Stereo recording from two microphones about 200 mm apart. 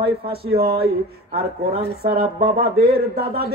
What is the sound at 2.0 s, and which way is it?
Speech, 50° right (ahead or behind).